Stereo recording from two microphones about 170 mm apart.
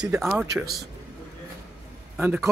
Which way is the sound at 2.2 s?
5° right (ahead or behind).